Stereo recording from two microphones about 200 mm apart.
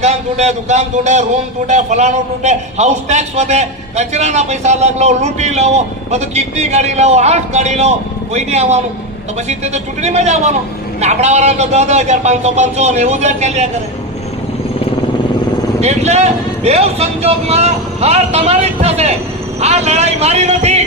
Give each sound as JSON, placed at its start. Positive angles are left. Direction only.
{"t": 0.0, "sound": "a man's voice", "side_deg": -35}
{"t": 15.8, "sound": "a man's voice", "side_deg": -35}